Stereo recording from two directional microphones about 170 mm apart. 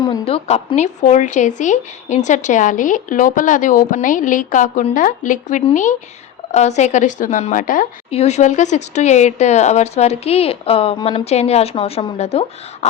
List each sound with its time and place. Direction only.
0.1 s speech: 35° left (ahead or behind); by 7.9 s 50° left (ahead or behind)
8.1 s speech: 40° left (ahead or behind)